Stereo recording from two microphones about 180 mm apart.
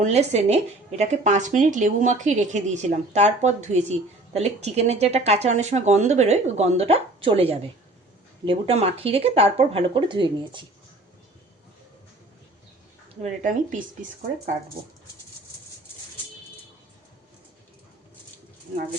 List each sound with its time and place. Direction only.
0.0 s speech: 40° right (ahead or behind)
13.2 s speech: 45° right (ahead or behind)